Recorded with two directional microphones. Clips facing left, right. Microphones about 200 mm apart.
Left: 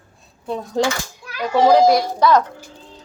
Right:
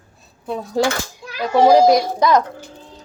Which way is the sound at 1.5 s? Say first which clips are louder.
Right 1 dB; 15° right (ahead or behind).